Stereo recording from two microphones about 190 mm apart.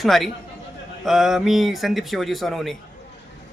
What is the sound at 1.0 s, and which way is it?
Speech, centre (ahead or behind).